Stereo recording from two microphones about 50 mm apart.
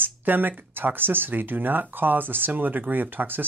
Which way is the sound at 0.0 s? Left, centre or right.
Right.